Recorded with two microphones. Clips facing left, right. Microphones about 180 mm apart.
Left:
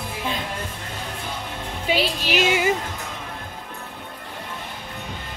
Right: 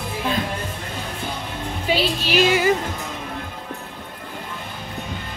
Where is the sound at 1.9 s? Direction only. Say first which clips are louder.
Right 1 dB; 20° left (ahead or behind).